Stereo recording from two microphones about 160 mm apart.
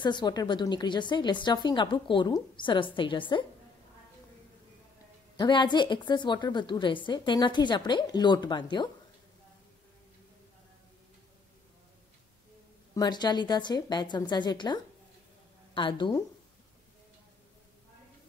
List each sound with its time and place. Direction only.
0.0 s a woman's voice: 30° left (ahead or behind)
5.4 s a woman's voice: 30° left (ahead or behind)
12.9 s a woman's voice: 25° left (ahead or behind)